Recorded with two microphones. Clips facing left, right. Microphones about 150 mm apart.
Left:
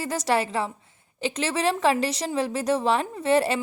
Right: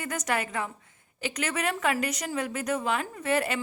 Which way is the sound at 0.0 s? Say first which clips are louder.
Left 6 dB; 30° left (ahead or behind).